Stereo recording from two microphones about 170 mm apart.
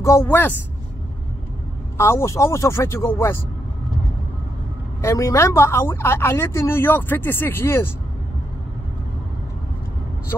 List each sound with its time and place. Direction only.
0.0 s speech: 15° left (ahead or behind)
2.0 s speech: 15° left (ahead or behind)
5.0 s speech: 15° left (ahead or behind)